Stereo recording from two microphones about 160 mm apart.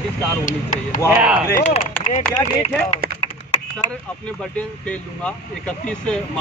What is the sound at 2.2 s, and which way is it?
Speech, 5° left (ahead or behind).